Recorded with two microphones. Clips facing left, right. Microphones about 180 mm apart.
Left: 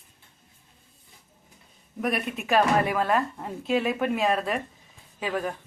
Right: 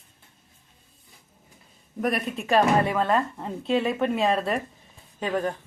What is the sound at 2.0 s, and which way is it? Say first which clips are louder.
Speech: right 2 dB; centre (ahead or behind).